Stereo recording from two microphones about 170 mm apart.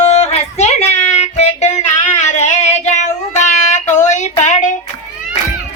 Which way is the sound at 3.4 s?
45° left (ahead or behind).